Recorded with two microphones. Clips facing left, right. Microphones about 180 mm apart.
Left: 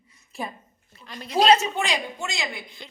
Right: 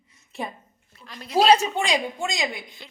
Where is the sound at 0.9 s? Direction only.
Centre (ahead or behind).